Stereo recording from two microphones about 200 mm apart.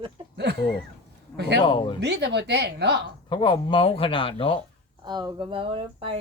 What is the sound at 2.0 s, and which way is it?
Speech, 55° right (ahead or behind).